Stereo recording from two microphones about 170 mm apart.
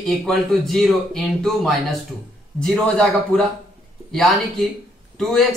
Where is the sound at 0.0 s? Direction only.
Centre (ahead or behind).